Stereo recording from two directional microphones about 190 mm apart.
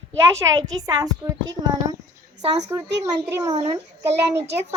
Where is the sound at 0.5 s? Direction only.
20° right (ahead or behind).